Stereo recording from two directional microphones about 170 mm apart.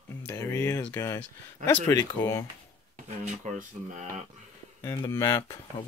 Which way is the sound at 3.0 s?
45° right (ahead or behind).